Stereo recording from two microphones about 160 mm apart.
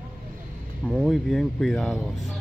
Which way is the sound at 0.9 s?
Centre (ahead or behind).